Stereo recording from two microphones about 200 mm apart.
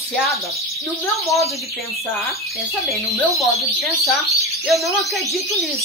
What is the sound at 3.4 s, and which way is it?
Speech, centre (ahead or behind).